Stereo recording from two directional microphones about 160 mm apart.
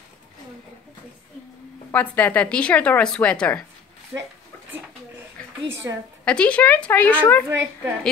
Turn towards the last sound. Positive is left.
turn(degrees=-15)  # may be behind; listen again after turning